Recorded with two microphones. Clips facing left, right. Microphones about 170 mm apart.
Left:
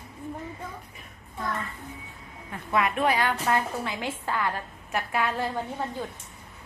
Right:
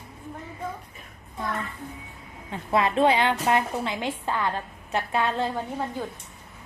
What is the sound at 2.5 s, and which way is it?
A woman's voice, 30° right (ahead or behind).